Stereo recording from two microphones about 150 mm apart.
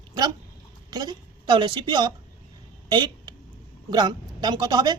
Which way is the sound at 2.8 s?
30° right (ahead or behind).